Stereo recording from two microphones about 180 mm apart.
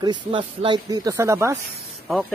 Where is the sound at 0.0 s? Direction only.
25° right (ahead or behind).